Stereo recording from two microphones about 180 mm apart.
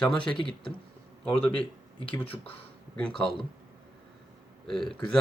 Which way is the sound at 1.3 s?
30° left (ahead or behind).